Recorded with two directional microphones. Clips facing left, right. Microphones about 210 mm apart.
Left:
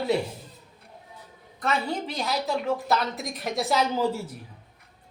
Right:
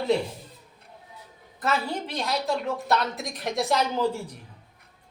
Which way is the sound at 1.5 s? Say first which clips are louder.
Even; centre (ahead or behind).